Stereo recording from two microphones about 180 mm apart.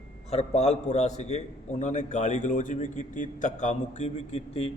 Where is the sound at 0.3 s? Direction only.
35° left (ahead or behind).